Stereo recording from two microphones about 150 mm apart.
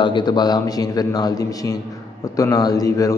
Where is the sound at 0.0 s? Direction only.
30° left (ahead or behind).